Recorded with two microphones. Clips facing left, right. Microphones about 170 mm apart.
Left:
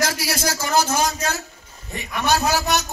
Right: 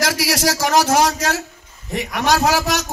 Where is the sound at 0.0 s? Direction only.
85° right.